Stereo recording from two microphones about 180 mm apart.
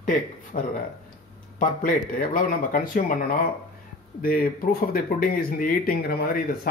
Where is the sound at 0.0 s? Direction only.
50° left (ahead or behind).